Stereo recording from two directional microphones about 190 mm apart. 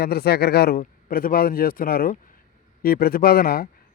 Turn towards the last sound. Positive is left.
turn(degrees=50)  # may be behind; listen again after turning